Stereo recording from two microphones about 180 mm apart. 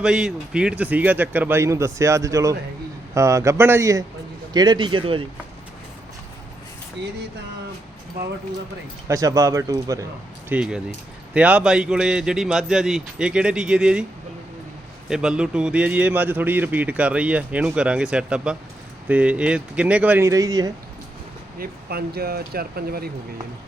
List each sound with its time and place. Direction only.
0.0 s a man's voice: 5° right (ahead or behind); by 5.2 s 30° right (ahead or behind)
9.0 s a man's voice: 20° right (ahead or behind)
10.5 s speech: 5° right (ahead or behind)
15.1 s a man's voice: 5° right (ahead or behind); by 20.7 s 20° right (ahead or behind)
21.6 s speech: 60° right (ahead or behind)